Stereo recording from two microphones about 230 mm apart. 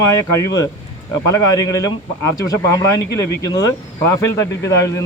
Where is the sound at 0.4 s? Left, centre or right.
Centre.